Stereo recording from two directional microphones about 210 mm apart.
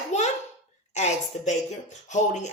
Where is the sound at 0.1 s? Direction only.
35° left (ahead or behind).